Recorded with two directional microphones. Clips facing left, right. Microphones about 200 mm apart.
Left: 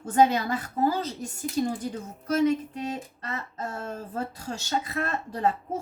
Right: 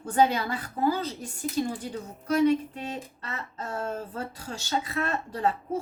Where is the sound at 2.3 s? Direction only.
40° left (ahead or behind).